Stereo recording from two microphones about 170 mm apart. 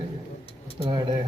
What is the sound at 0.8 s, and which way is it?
Speech, 25° right (ahead or behind).